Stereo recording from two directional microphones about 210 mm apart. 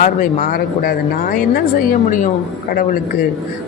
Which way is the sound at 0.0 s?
40° left (ahead or behind).